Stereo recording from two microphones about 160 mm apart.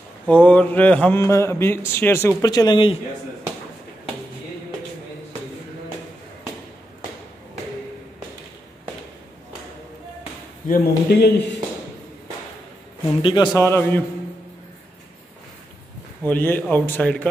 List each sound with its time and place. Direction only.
0.3 s speech: 10° left (ahead or behind); by 3.0 s 30° left (ahead or behind)
10.7 s speech: 85° left
13.2 s a man's voice: 30° left (ahead or behind)
13.6 s speech: 15° left (ahead or behind)
16.3 s speech: 10° left (ahead or behind)